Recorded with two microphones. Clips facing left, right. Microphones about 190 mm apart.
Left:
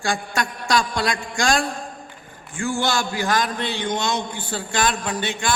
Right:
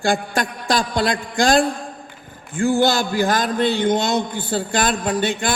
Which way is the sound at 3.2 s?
50° right (ahead or behind).